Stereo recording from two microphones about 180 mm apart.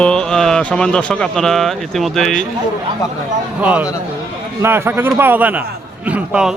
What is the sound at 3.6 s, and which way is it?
A man's voice, 10° right (ahead or behind).